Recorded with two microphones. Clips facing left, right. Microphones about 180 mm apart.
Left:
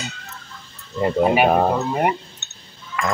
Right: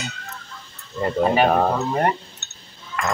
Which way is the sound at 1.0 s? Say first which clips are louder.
Left 2 dB; 10° left (ahead or behind).